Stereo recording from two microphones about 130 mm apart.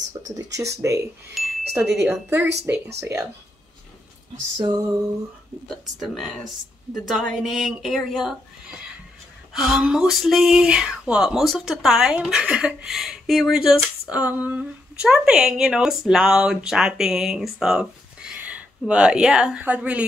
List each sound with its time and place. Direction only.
0.5 s speech: 25° right (ahead or behind)
1.4 s chime: centre (ahead or behind)
1.8 s speech: 15° right (ahead or behind)
4.6 s speech: 30° right (ahead or behind)
5.9 s speech: centre (ahead or behind)